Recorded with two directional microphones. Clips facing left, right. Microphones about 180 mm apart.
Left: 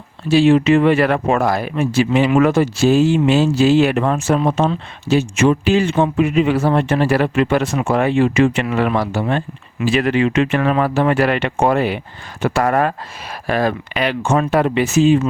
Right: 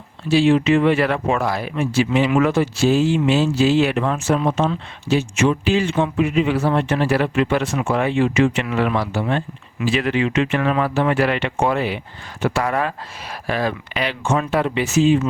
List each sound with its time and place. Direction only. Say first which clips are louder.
0.3 s speech: left 3 dB; 45° left (ahead or behind)